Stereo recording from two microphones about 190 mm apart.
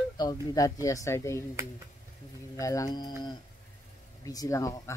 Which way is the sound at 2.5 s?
15° left (ahead or behind).